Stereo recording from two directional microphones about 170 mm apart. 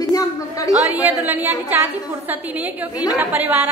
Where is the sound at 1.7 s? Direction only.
10° right (ahead or behind).